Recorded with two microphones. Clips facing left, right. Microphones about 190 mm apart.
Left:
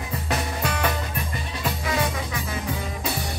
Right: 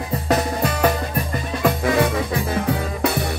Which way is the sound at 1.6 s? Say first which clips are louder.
Right 8 dB; 55° right (ahead or behind).